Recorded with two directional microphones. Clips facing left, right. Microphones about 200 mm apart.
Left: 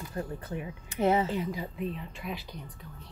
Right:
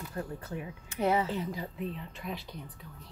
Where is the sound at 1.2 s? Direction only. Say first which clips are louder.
Left 2 dB; 15° left (ahead or behind).